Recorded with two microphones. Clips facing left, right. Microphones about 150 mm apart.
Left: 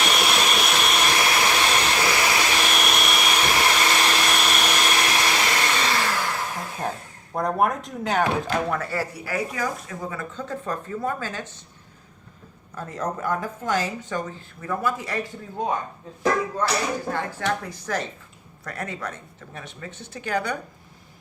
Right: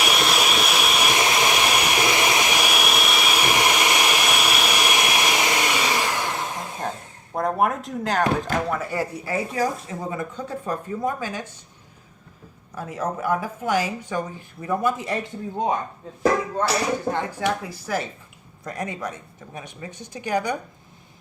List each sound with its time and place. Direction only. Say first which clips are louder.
0.0 s vehicle: right 1 dB; centre (ahead or behind)
1.1 s vehicle: right 1 dB; 20° right (ahead or behind)
7.3 s speech: even; centre (ahead or behind)
8.7 s a woman's voice: right 1 dB; 15° right (ahead or behind)
12.7 s a woman's voice: right 1 dB; 10° right (ahead or behind)
17.1 s a woman's voice: right 2 dB; 15° right (ahead or behind)